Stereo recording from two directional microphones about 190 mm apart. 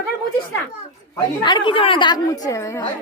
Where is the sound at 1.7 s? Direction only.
25° left (ahead or behind).